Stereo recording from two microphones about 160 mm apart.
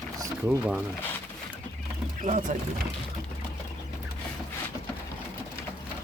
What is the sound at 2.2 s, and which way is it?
Speech, 50° right (ahead or behind).